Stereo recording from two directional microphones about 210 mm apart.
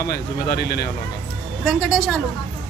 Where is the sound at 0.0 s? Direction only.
50° left (ahead or behind).